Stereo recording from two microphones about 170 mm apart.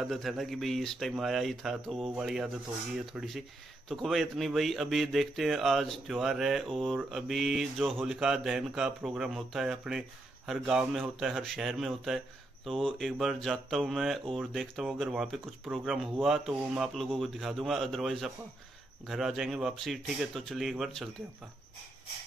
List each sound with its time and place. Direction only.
0.0 s speech: centre (ahead or behind)